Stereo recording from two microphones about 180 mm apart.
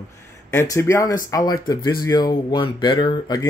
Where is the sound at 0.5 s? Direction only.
15° left (ahead or behind).